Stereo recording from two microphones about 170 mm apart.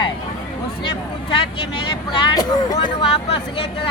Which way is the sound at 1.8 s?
25° left (ahead or behind).